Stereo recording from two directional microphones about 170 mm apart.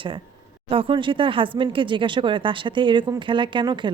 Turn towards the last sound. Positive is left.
turn(degrees=-25)  # may be behind; listen again after turning